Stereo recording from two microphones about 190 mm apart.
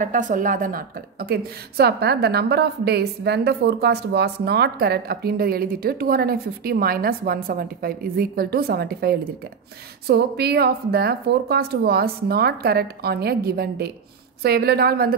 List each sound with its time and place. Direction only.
0.0 s a woman's voice: 45° right (ahead or behind)